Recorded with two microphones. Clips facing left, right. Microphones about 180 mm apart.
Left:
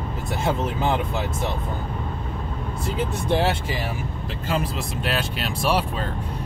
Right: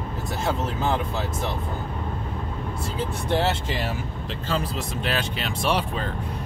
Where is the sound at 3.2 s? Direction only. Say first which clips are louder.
Left 1 dB; 15° left (ahead or behind).